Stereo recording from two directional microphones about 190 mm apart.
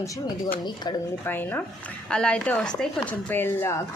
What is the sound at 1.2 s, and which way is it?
Speech, 10° left (ahead or behind).